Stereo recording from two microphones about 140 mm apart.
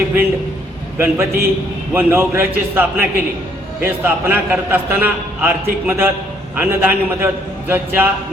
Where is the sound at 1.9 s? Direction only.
15° right (ahead or behind).